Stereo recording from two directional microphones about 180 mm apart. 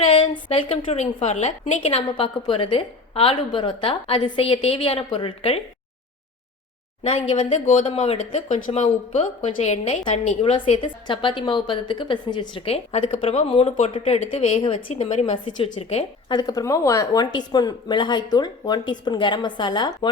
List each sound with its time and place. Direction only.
0.0 s a sound: 30° left (ahead or behind)
0.9 s speech: 35° left (ahead or behind)
7.0 s speech: 30° left (ahead or behind)